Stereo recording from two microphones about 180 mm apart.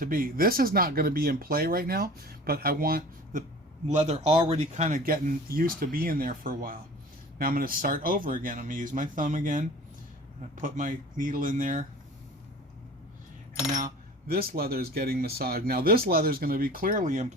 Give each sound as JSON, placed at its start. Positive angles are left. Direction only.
{"t": 0.0, "sound": "speech", "side_deg": -50}
{"t": 3.8, "sound": "speech", "side_deg": -40}
{"t": 13.7, "sound": "speech", "side_deg": -55}